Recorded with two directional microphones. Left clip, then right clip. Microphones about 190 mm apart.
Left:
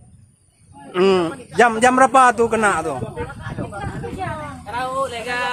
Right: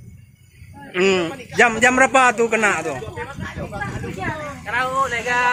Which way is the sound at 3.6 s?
35° left (ahead or behind).